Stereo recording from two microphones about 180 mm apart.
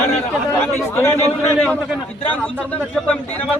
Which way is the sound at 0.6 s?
15° left (ahead or behind).